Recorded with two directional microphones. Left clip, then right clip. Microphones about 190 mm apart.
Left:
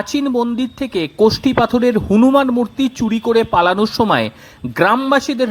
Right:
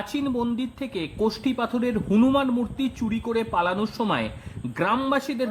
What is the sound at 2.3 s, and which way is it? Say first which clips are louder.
Speech: left 10 dB; 35° left (ahead or behind).